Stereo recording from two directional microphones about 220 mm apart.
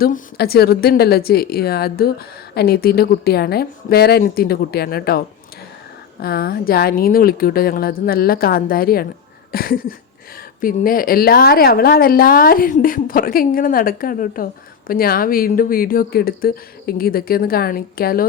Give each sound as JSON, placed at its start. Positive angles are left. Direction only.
{"t": 0.0, "sound": "a woman's voice", "side_deg": 45}
{"t": 6.2, "sound": "a woman's voice", "side_deg": 45}